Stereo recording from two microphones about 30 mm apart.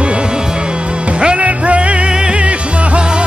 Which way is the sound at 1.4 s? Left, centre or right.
Right.